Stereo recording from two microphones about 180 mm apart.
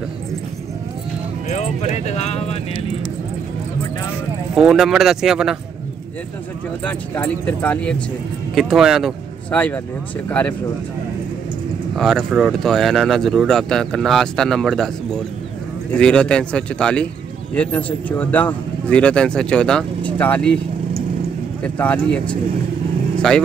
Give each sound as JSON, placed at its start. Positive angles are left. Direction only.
{"t": 1.5, "sound": "speech", "side_deg": 40}
{"t": 4.6, "sound": "speech", "side_deg": 0}
{"t": 6.8, "sound": "speech", "side_deg": 10}
{"t": 11.9, "sound": "speech", "side_deg": 0}
{"t": 15.9, "sound": "speech", "side_deg": 5}
{"t": 21.6, "sound": "speech", "side_deg": 5}
{"t": 23.1, "sound": "vehicle", "side_deg": 5}